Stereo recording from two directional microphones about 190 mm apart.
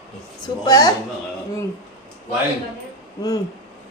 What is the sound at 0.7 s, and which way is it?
Speech, 20° left (ahead or behind).